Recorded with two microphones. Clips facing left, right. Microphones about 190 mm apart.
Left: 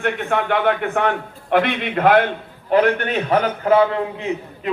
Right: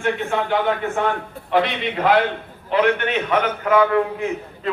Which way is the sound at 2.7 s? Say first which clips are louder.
Left 2 dB; 40° left (ahead or behind).